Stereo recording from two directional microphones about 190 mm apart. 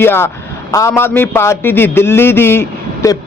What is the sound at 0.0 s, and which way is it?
A man's voice, 10° left (ahead or behind).